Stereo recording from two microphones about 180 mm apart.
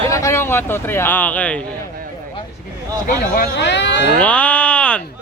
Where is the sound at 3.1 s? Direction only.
50° left (ahead or behind).